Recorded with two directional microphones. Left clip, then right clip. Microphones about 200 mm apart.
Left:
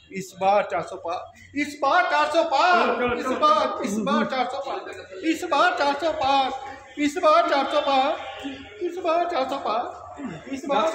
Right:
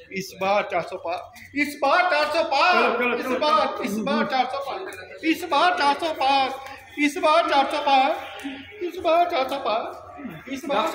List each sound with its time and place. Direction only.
0.1 s a man's voice: 15° left (ahead or behind)